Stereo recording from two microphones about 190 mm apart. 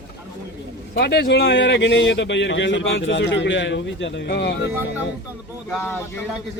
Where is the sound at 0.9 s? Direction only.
60° left (ahead or behind).